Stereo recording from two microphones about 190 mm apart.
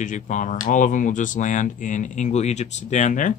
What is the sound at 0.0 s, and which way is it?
Speech, 40° left (ahead or behind).